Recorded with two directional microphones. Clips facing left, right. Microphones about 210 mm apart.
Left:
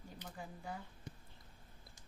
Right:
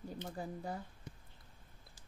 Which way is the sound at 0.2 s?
35° right (ahead or behind).